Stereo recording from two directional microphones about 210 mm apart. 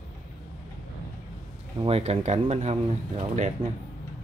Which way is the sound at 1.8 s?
30° right (ahead or behind).